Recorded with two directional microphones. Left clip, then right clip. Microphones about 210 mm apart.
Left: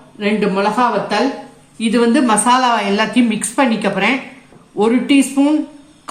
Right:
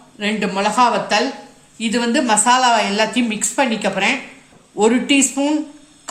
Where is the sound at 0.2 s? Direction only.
30° right (ahead or behind).